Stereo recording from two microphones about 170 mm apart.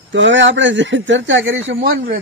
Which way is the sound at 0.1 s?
90° right.